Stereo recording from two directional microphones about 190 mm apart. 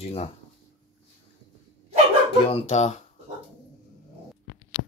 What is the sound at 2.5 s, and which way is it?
Speech, 35° left (ahead or behind).